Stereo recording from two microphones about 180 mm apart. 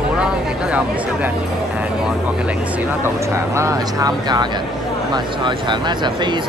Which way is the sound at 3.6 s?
20° right (ahead or behind).